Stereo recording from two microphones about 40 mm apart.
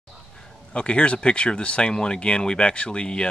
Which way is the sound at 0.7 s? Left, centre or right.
Left.